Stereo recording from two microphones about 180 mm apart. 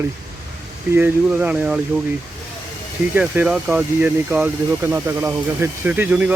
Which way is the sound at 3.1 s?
10° right (ahead or behind).